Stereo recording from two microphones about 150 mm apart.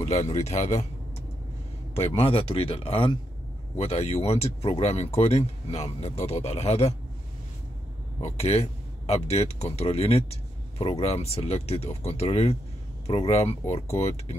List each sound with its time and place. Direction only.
0.0 s speech: 40° left (ahead or behind)
2.0 s speech: 40° left (ahead or behind)
8.2 s speech: 45° left (ahead or behind)